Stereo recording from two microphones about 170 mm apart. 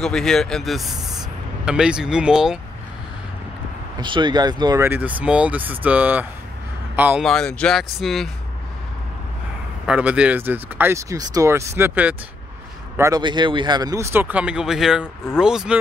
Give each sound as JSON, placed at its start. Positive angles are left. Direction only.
{"t": 0.0, "sound": "speech", "side_deg": 5}
{"t": 4.0, "sound": "speech", "side_deg": -25}
{"t": 4.8, "sound": "speech", "side_deg": -10}
{"t": 7.2, "sound": "speech", "side_deg": 0}
{"t": 9.8, "sound": "speech", "side_deg": -5}